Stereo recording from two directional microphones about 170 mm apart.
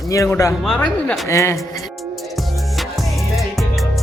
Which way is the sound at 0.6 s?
5° left (ahead or behind).